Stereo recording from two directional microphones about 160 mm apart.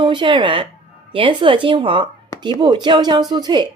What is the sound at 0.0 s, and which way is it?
A woman's voice, 30° right (ahead or behind).